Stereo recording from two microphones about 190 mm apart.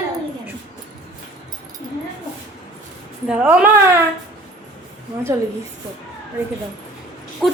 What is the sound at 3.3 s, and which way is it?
Speech, 5° right (ahead or behind).